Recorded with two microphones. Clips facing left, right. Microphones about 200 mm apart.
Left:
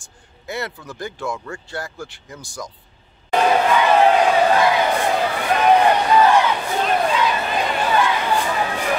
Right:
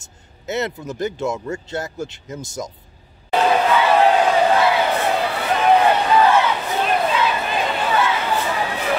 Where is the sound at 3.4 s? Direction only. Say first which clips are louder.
Even; 15° left (ahead or behind).